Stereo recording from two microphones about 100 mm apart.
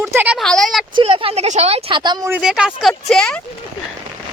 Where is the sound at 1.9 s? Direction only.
45° right (ahead or behind).